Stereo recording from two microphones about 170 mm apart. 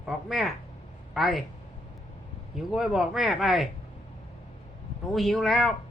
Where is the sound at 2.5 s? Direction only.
Centre (ahead or behind).